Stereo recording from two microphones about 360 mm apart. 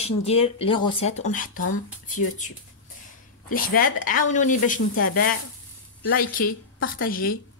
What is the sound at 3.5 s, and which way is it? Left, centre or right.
Speech, left.